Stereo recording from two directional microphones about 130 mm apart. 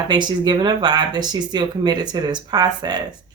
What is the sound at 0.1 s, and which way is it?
Speech, 35° right (ahead or behind).